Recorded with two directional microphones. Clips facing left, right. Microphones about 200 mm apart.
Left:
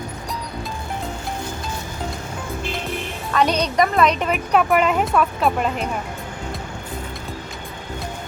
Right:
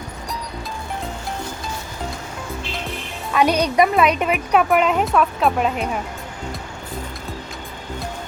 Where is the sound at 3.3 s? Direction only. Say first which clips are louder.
Right 2 dB; 10° right (ahead or behind).